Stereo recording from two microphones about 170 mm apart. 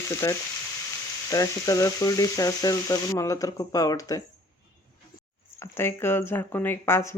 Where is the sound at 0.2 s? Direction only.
20° left (ahead or behind).